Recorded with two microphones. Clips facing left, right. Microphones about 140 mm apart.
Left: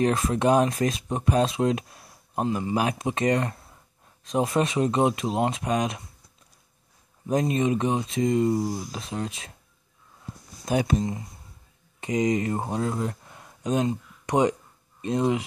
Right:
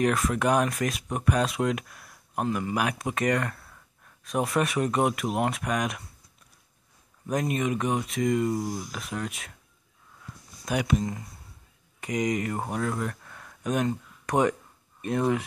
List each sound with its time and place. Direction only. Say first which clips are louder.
0.0 s speech: left 2 dB; 30° left (ahead or behind)
7.2 s speech: left 4 dB; 25° left (ahead or behind)
10.2 s a sound: left 4 dB; 25° left (ahead or behind)
12.0 s speech: left 3 dB; 25° left (ahead or behind)